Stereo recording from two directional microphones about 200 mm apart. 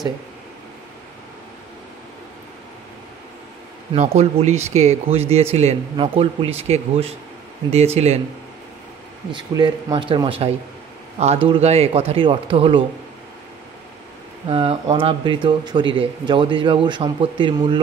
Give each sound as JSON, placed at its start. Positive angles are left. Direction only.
{"t": 3.9, "sound": "speech", "side_deg": -30}
{"t": 9.3, "sound": "speech", "side_deg": -20}
{"t": 14.5, "sound": "speech", "side_deg": -25}